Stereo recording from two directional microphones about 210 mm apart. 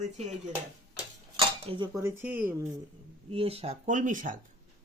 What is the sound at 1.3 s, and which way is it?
Cutlery, 25° right (ahead or behind).